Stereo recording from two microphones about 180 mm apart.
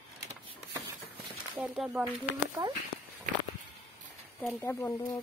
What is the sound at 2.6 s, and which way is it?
Speech, 20° right (ahead or behind).